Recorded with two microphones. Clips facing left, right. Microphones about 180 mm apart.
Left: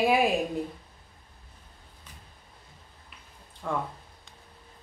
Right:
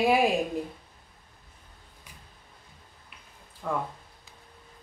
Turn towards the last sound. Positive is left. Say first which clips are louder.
# even
turn(degrees=0)  # may be behind; listen again after turning